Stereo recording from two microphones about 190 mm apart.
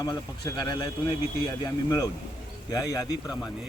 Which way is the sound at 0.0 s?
20° left (ahead or behind).